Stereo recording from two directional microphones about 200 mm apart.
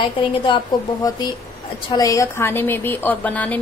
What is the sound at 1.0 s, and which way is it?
A woman's voice, 20° left (ahead or behind).